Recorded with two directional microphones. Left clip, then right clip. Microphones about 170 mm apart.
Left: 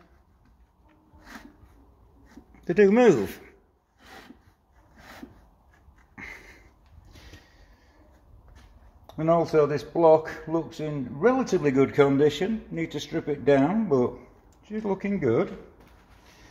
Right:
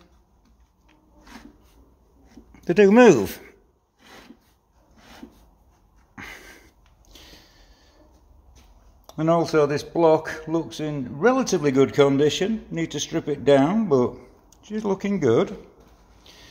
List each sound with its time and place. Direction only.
2.5 s speech: 25° right (ahead or behind)
6.1 s sniff: 25° right (ahead or behind)
9.0 s speech: 15° right (ahead or behind)